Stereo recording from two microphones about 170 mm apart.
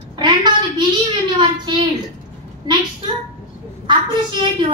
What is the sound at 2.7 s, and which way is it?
Speech, 25° right (ahead or behind).